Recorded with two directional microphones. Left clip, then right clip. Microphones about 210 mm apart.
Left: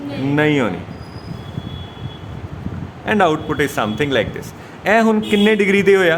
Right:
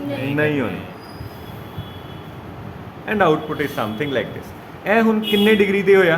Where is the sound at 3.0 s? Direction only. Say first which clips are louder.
Left 2 dB; 55° left (ahead or behind).